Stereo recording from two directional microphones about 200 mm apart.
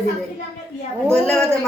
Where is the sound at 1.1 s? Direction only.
5° left (ahead or behind).